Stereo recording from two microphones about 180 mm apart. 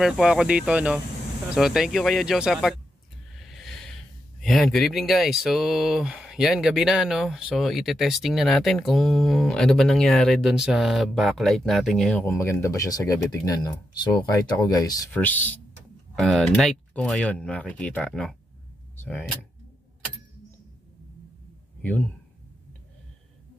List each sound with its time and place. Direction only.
0.0 s speech: centre (ahead or behind)
3.3 s a sound: centre (ahead or behind)
4.4 s speech: centre (ahead or behind); by 15.0 s 20° left (ahead or behind)
15.1 s speech: 10° left (ahead or behind)
21.8 s speech: 10° left (ahead or behind)